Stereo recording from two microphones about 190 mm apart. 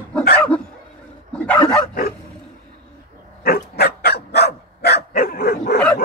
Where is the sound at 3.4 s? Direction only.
55° left (ahead or behind).